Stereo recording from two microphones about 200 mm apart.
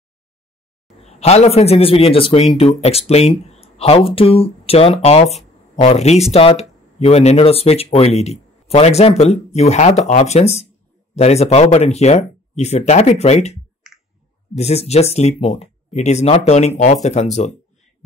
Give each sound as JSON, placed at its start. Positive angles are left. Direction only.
{"t": 1.0, "sound": "speech", "side_deg": 30}
{"t": 13.9, "sound": "clicking", "side_deg": 0}
{"t": 14.5, "sound": "speech", "side_deg": 30}